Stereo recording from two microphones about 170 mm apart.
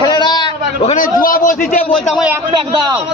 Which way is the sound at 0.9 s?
55° left (ahead or behind).